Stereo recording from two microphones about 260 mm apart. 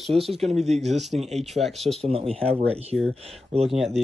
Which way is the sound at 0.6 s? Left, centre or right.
Right.